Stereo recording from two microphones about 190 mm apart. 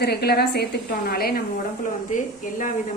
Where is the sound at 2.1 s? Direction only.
40° left (ahead or behind).